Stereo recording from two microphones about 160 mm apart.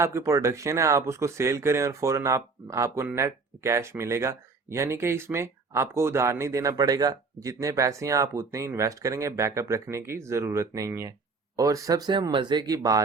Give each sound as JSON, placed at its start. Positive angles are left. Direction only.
{"t": 0.0, "sound": "speech", "side_deg": -15}